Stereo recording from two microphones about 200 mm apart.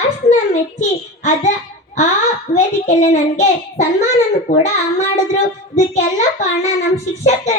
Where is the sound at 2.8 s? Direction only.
35° left (ahead or behind).